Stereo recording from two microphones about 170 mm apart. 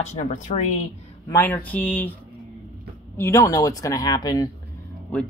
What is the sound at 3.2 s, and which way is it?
Speech, 20° left (ahead or behind).